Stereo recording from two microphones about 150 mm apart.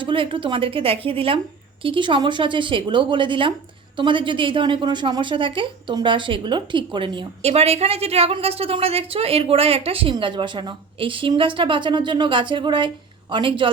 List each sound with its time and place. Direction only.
0.0 s a woman's voice: 35° right (ahead or behind)